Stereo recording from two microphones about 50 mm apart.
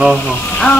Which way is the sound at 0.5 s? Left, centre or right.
Left.